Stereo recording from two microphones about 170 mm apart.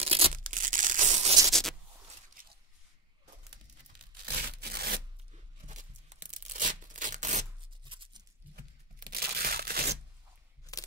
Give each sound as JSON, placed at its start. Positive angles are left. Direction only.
{"t": 0.0, "sound": "tearing", "side_deg": -35}
{"t": 0.4, "sound": "tearing", "side_deg": -50}
{"t": 1.5, "sound": "zipper", "side_deg": 0}
{"t": 2.4, "sound": "a sound", "side_deg": -55}
{"t": 4.5, "sound": "rub", "side_deg": -70}
{"t": 5.3, "sound": "tearing", "side_deg": -45}
{"t": 7.8, "sound": "tearing", "side_deg": -30}
{"t": 9.1, "sound": "crushing", "side_deg": -60}
{"t": 10.7, "sound": "a sound", "side_deg": 20}